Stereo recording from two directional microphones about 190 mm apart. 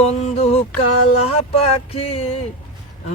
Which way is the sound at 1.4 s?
30° left (ahead or behind).